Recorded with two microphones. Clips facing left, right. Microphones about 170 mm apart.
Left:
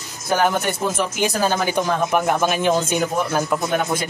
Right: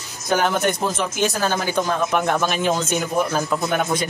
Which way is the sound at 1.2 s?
15° left (ahead or behind).